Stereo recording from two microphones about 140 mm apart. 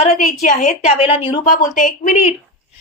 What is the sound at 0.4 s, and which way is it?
Speech, 65° left (ahead or behind).